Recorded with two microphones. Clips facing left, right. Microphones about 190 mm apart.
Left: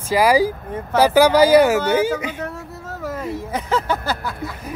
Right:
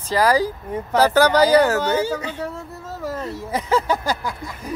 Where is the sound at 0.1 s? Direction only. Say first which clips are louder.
Left 2 dB; 10° left (ahead or behind).